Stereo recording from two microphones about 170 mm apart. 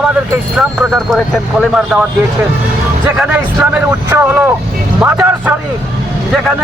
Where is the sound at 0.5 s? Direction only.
Centre (ahead or behind).